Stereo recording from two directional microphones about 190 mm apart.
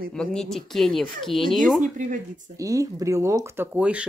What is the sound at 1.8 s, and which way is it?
Speech, 40° right (ahead or behind).